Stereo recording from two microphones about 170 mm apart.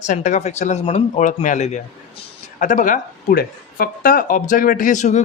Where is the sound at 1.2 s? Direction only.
50° left (ahead or behind).